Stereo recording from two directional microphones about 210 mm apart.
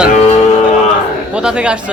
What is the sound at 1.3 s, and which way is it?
Speech, 5° right (ahead or behind).